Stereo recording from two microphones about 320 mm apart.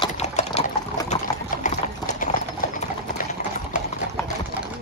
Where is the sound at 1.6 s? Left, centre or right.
Left.